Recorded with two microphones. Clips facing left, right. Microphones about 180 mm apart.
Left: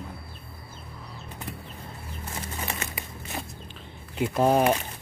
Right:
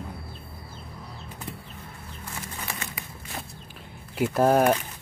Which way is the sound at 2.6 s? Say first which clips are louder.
Left 2 dB; 25° left (ahead or behind).